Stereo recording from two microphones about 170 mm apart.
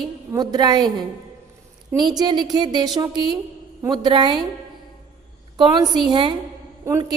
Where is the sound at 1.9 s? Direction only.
25° right (ahead or behind).